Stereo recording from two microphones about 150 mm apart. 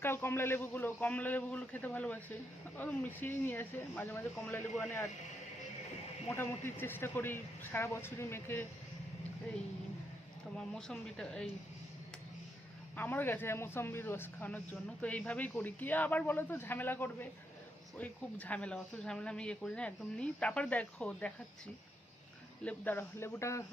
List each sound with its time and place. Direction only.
0.0 s a man's voice: 15° left (ahead or behind)
6.3 s a man's voice: 15° left (ahead or behind)
10.8 s speech: 5° left (ahead or behind)
13.0 s a man's voice: 15° left (ahead or behind)
22.6 s a man's voice: 10° left (ahead or behind)